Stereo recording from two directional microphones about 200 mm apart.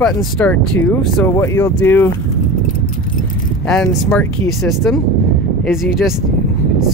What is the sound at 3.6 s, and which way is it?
Speech, 5° left (ahead or behind).